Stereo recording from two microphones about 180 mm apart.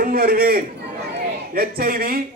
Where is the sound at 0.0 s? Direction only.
55° right (ahead or behind).